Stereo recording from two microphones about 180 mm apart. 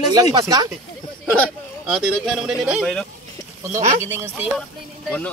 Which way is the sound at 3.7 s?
40° right (ahead or behind).